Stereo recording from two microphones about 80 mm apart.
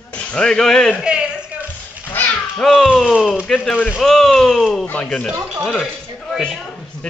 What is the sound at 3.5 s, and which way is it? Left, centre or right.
Speech, centre.